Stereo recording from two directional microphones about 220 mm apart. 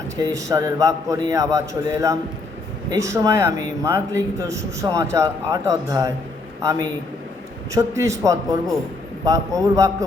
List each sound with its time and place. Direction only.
0.2 s a man's voice: 15° right (ahead or behind)